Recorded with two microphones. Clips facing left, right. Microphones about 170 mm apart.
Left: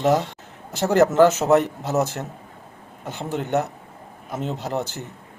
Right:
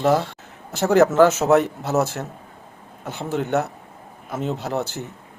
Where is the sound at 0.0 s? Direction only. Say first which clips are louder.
Right 1 dB; 20° left (ahead or behind).